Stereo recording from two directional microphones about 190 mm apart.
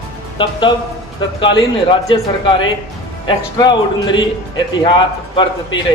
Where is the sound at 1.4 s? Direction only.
25° left (ahead or behind).